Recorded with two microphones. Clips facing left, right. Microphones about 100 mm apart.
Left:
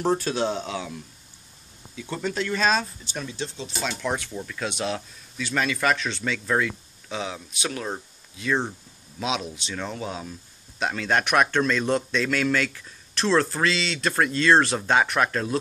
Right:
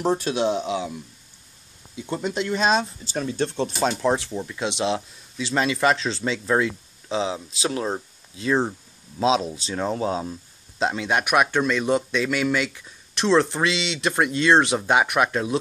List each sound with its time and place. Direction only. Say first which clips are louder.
0.0 s speech: right 2 dB; 15° right (ahead or behind)
3.1 s speech: right 7 dB; 35° right (ahead or behind)
3.3 s speech: right 9 dB; 55° right (ahead or behind)
3.8 s speech: right 6 dB; 30° right (ahead or behind)
11.1 s speech: even; 10° right (ahead or behind)